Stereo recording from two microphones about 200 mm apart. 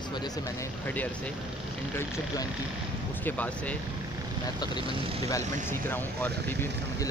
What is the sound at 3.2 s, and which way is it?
Speech, 10° left (ahead or behind).